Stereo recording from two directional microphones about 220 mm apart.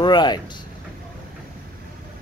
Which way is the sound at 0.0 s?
20° left (ahead or behind).